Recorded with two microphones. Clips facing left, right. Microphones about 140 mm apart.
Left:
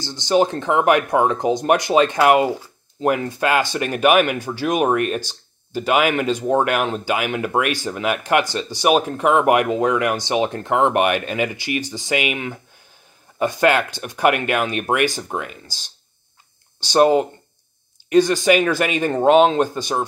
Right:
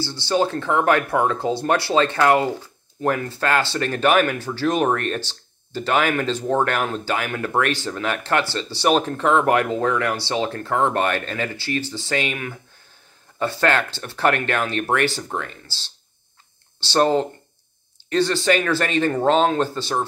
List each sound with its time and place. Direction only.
0.0 s speech: 15° left (ahead or behind)
13.4 s speech: 15° left (ahead or behind)